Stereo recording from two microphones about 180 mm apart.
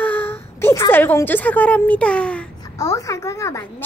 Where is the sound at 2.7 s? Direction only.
20° left (ahead or behind).